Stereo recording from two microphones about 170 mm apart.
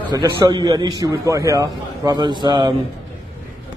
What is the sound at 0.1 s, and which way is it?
A man's voice, 25° right (ahead or behind).